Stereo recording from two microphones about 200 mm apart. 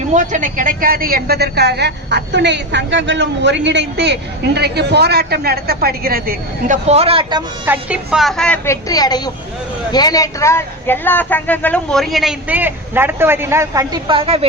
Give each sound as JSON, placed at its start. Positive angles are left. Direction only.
{"t": 0.1, "sound": "a woman's voice", "side_deg": -40}
{"t": 6.8, "sound": "speech", "side_deg": -30}
{"t": 7.6, "sound": "a woman's voice", "side_deg": -10}